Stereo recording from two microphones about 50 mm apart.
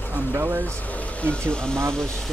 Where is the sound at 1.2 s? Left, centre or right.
Left.